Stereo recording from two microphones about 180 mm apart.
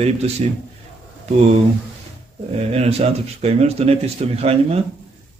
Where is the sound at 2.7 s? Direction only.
35° right (ahead or behind).